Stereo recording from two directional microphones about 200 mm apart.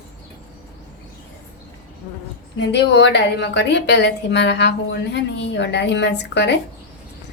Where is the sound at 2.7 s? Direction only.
60° left (ahead or behind).